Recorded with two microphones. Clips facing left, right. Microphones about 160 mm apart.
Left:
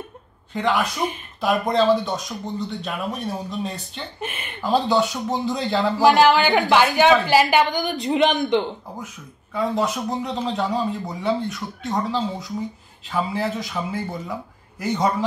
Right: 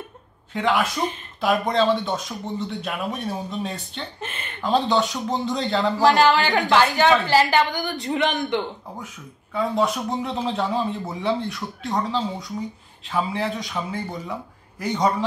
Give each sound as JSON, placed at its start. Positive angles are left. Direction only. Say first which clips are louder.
{"t": 0.5, "sound": "a man's voice", "louder": "even", "side_deg": 0}
{"t": 4.2, "sound": "a woman's voice", "louder": "left 2 dB", "side_deg": 10}
{"t": 4.6, "sound": "speech", "louder": "left 1 dB", "side_deg": 0}
{"t": 6.0, "sound": "a woman's voice", "louder": "left 3 dB", "side_deg": 20}
{"t": 9.0, "sound": "speech", "louder": "left 1 dB", "side_deg": 0}